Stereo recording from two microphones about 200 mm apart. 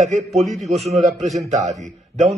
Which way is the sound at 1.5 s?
35° right (ahead or behind).